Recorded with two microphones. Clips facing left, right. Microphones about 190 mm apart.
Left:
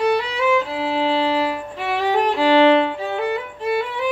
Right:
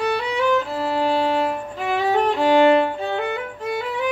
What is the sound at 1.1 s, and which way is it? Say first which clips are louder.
Violin: left 1 dB; centre (ahead or behind).